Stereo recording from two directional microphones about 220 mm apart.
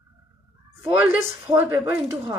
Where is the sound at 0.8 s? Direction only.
10° right (ahead or behind).